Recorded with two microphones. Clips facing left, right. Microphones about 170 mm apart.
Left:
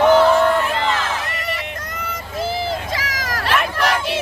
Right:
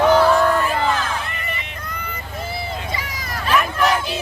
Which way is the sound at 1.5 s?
90° left.